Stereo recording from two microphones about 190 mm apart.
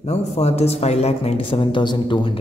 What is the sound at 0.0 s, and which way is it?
Speech, 35° left (ahead or behind).